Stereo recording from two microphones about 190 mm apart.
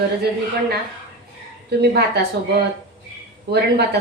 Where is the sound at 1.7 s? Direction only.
60° right (ahead or behind).